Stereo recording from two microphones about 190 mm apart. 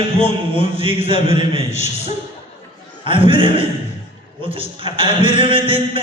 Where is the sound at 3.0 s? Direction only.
25° right (ahead or behind).